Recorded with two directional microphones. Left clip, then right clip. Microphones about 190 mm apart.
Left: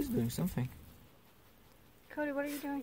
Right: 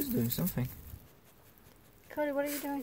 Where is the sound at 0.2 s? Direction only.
10° left (ahead or behind).